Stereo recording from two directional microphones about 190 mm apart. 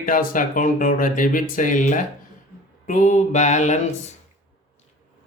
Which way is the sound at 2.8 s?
40° left (ahead or behind).